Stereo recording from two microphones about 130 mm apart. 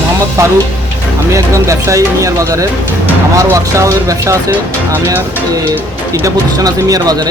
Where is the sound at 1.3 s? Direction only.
25° right (ahead or behind).